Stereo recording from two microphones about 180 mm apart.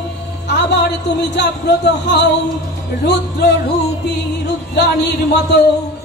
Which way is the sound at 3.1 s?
70° left (ahead or behind).